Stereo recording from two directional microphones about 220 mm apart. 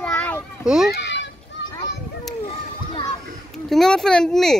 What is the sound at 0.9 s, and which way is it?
Children playing, 55° left (ahead or behind).